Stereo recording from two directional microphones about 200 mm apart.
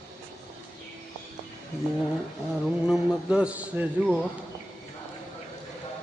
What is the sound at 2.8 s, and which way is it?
A man's voice, 5° right (ahead or behind).